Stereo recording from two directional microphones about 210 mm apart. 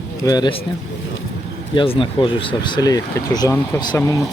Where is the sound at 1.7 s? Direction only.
25° left (ahead or behind).